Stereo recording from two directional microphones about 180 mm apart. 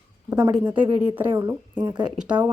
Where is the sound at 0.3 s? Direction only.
10° right (ahead or behind).